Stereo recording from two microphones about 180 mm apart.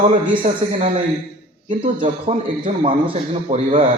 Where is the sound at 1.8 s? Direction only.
30° right (ahead or behind).